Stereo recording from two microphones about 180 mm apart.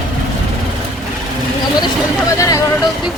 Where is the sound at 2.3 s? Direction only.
20° left (ahead or behind).